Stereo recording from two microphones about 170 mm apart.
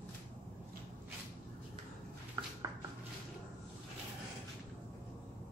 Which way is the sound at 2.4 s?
25° right (ahead or behind).